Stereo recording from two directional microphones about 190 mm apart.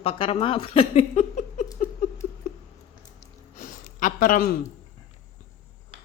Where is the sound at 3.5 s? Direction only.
45° left (ahead or behind).